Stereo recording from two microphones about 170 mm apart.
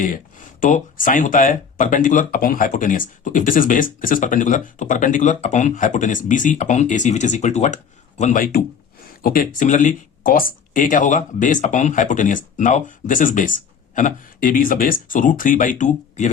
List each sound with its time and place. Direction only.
0.0 s speech: 50° left (ahead or behind)